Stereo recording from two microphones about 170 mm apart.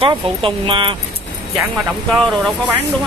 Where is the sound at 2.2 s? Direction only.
Centre (ahead or behind).